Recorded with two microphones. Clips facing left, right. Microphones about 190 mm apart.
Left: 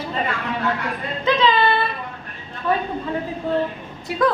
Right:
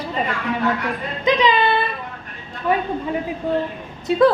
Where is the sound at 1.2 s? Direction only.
15° right (ahead or behind).